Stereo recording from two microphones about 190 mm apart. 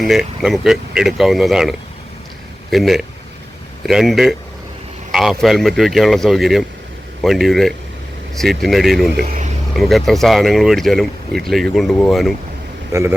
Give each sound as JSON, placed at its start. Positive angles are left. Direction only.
{"t": 0.0, "sound": "speech", "side_deg": 0}
{"t": 9.1, "sound": "speech", "side_deg": -55}
{"t": 9.7, "sound": "speech", "side_deg": 0}
{"t": 12.9, "sound": "a man's voice", "side_deg": -15}